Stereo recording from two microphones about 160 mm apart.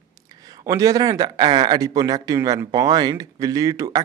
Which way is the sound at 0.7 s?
20° right (ahead or behind).